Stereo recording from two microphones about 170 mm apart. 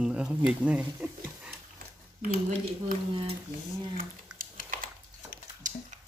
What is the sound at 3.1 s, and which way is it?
Speech, 35° right (ahead or behind).